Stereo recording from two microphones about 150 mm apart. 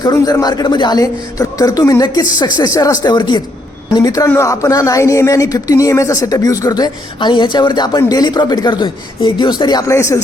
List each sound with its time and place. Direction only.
0.0 s speech: 25° left (ahead or behind)